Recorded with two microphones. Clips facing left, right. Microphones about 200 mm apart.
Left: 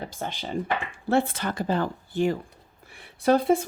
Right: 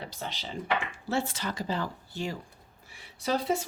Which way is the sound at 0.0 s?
50° left (ahead or behind).